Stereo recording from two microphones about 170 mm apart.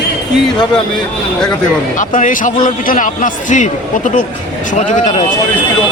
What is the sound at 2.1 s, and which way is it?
A man's voice, 50° left (ahead or behind).